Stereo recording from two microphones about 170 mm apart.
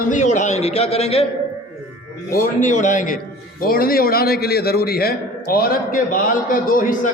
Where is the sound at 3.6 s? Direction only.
60° left (ahead or behind).